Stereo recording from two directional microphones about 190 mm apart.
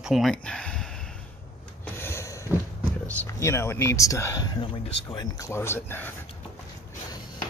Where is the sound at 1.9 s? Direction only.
15° left (ahead or behind).